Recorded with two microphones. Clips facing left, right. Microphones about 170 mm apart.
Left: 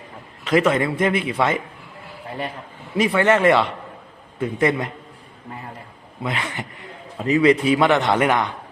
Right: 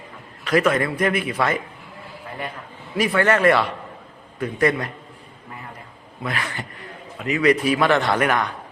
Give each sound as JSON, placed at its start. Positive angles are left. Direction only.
{"t": 0.4, "sound": "a man's voice", "side_deg": 25}
{"t": 3.2, "sound": "a man's voice", "side_deg": 20}
{"t": 6.2, "sound": "speech", "side_deg": 20}
{"t": 7.2, "sound": "a man's voice", "side_deg": 30}